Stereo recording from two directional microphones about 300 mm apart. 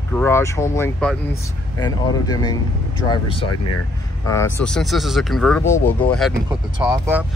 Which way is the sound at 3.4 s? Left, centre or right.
Left.